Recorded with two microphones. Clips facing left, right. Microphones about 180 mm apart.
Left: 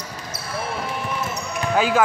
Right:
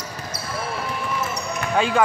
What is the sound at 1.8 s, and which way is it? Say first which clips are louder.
Speech: left 1 dB; 5° left (ahead or behind).